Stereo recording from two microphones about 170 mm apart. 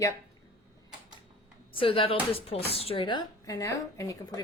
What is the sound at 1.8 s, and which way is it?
Speech, 30° left (ahead or behind).